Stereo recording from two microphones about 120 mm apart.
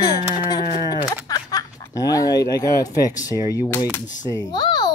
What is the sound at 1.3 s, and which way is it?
Snicker, 30° left (ahead or behind).